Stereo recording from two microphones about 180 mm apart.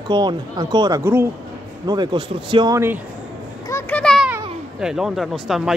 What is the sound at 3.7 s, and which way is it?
Children playing, 10° left (ahead or behind).